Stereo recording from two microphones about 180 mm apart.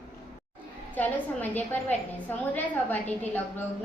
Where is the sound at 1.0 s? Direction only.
10° left (ahead or behind).